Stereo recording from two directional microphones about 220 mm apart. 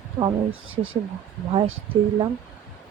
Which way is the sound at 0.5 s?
65° right (ahead or behind).